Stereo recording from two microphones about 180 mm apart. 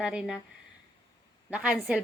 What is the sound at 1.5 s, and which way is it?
Speech, 10° right (ahead or behind).